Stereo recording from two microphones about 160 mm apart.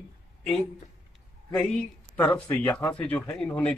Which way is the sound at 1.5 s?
5° left (ahead or behind).